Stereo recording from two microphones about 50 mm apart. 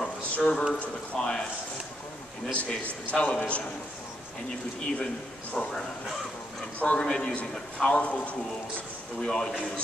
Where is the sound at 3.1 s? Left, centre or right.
Left.